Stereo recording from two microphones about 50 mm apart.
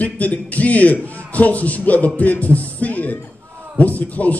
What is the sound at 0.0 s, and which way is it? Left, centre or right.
Speech, left.